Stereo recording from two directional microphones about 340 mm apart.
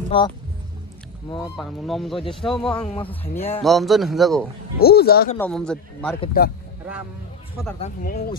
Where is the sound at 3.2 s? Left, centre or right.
Centre.